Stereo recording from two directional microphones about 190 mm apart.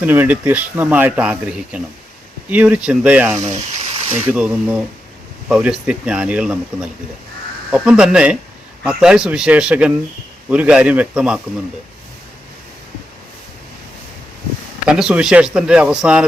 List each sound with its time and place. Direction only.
0.0 s speech: 10° right (ahead or behind)
14.8 s speech: 5° right (ahead or behind)